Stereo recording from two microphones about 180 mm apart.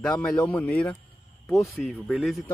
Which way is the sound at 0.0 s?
5° left (ahead or behind).